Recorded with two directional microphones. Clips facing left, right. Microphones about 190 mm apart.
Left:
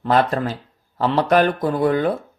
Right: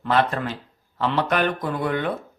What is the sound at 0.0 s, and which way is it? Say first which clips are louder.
Speech: left 3 dB; 40° left (ahead or behind).